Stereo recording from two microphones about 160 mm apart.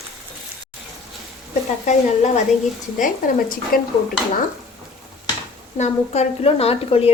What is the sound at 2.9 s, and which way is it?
Speech, 55° left (ahead or behind).